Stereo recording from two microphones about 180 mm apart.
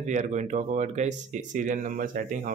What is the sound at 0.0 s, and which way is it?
Speech, 40° right (ahead or behind).